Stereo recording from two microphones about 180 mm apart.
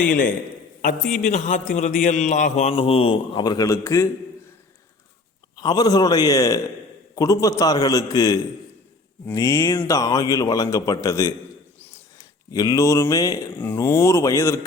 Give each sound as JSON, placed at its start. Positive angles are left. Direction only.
{"t": 0.1, "sound": "a man's voice", "side_deg": 50}
{"t": 5.5, "sound": "a man's voice", "side_deg": 20}